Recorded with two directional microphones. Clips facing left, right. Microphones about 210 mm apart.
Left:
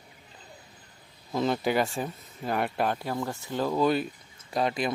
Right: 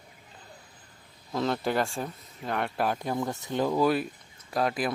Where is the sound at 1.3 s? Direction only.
5° left (ahead or behind).